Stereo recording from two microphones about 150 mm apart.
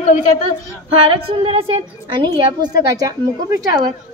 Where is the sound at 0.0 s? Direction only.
50° left (ahead or behind).